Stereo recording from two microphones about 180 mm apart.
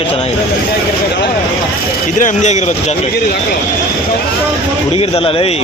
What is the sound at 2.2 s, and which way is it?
Music, 40° left (ahead or behind).